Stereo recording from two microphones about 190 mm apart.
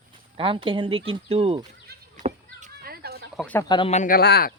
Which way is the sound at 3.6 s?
25° left (ahead or behind).